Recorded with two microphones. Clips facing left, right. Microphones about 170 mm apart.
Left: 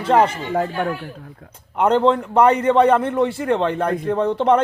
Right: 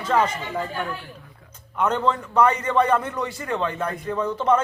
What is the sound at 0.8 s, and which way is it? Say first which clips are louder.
Speech: left 7 dB; 55° left (ahead or behind).